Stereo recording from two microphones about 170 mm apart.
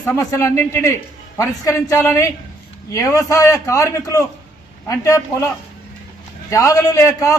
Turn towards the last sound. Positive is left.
turn(degrees=15)  # may be behind; listen again after turning